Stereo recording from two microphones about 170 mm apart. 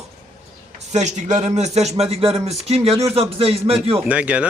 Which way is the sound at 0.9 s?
45° right (ahead or behind).